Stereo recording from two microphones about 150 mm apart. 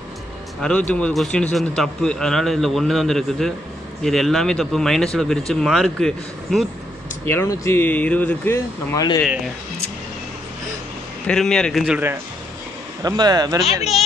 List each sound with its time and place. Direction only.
0.6 s speech: 5° left (ahead or behind)
7.2 s speech: 20° left (ahead or behind)
11.2 s speech: 5° left (ahead or behind)
13.0 s speech: 25° right (ahead or behind)